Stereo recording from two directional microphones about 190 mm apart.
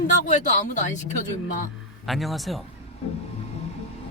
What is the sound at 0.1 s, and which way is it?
Speech, 40° left (ahead or behind).